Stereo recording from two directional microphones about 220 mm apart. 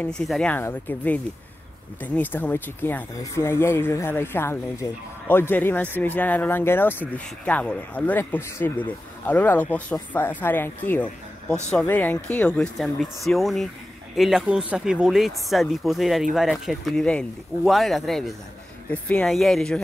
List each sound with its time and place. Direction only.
0.0 s speech: 5° left (ahead or behind)